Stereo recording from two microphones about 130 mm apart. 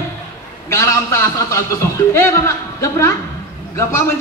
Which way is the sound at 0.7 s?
20° left (ahead or behind).